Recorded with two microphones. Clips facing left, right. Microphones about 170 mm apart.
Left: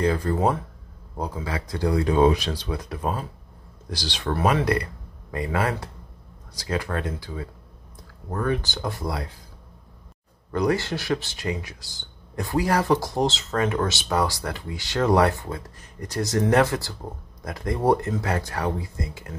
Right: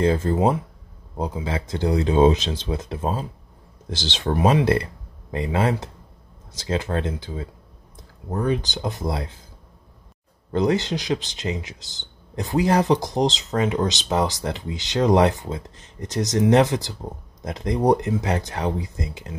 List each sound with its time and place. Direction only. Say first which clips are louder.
0.0 s speech: right 3 dB; 25° right (ahead or behind)
10.5 s speech: right 2 dB; 20° right (ahead or behind)